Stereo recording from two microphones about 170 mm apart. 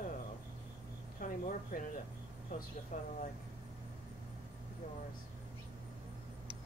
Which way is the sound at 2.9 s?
45° left (ahead or behind).